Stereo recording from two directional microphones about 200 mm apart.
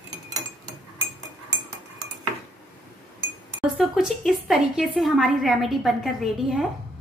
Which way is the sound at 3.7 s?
Centre (ahead or behind).